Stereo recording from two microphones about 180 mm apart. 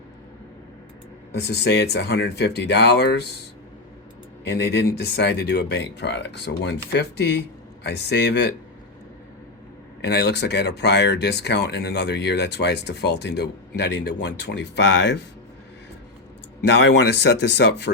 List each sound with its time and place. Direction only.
1.5 s speech: 65° left (ahead or behind)
4.4 s speech: 65° left (ahead or behind)
10.0 s speech: 65° left (ahead or behind)
16.6 s speech: 80° left